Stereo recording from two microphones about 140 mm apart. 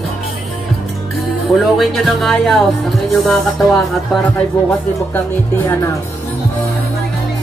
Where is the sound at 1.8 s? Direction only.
Centre (ahead or behind).